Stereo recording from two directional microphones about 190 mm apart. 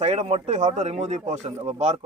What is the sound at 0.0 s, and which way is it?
A man's voice, 35° right (ahead or behind).